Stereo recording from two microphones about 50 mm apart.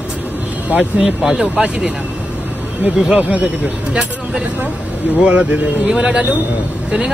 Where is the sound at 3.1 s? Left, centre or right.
Right.